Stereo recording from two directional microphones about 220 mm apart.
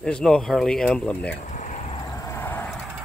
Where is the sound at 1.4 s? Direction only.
35° left (ahead or behind).